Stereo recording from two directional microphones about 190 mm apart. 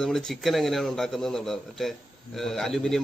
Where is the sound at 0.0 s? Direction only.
Centre (ahead or behind).